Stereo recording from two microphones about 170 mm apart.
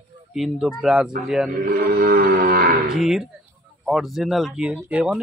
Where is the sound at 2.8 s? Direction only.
5° right (ahead or behind).